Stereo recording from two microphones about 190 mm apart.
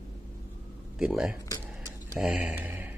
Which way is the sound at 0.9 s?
5° right (ahead or behind).